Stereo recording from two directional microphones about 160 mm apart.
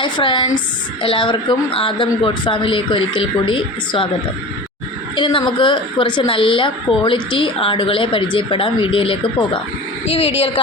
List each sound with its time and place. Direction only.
0.0 s a woman's voice: 30° left (ahead or behind)
5.1 s a woman's voice: 30° left (ahead or behind)